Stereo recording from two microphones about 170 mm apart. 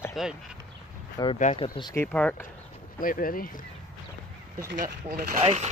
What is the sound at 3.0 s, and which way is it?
Speech, 55° left (ahead or behind).